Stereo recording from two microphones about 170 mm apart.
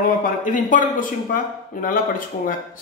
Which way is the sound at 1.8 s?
55° left (ahead or behind).